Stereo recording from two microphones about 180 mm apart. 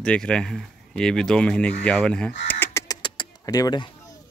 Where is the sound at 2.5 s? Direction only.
15° left (ahead or behind).